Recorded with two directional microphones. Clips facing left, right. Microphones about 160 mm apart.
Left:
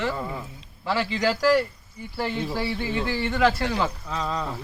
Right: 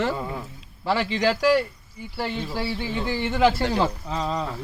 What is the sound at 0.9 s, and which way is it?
Speech, 25° right (ahead or behind).